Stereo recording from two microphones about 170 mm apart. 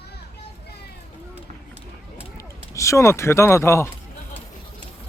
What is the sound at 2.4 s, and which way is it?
Speech, 20° left (ahead or behind).